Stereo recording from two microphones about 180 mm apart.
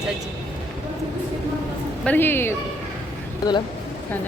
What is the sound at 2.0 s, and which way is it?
Speech, 10° left (ahead or behind).